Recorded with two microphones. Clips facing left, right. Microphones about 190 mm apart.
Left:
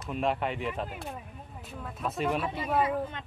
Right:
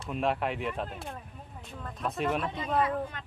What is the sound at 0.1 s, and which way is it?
Speech, centre (ahead or behind).